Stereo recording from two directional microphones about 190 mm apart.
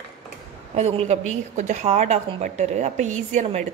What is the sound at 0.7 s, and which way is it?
A woman's voice, 35° right (ahead or behind).